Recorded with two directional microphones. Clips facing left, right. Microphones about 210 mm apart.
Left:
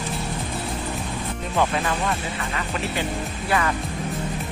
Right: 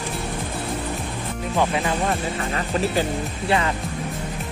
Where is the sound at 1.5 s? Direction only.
15° right (ahead or behind).